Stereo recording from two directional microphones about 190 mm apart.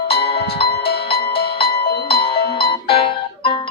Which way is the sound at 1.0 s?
30° left (ahead or behind).